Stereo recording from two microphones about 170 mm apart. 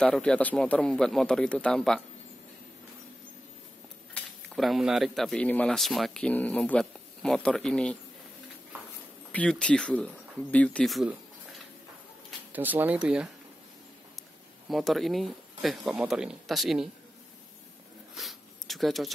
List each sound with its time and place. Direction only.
0.0 s speech: 5° left (ahead or behind)
4.1 s speech: centre (ahead or behind)
9.3 s speech: 5° left (ahead or behind)
12.5 s speech: 10° right (ahead or behind)
14.7 s speech: centre (ahead or behind)
18.1 s a sound: centre (ahead or behind)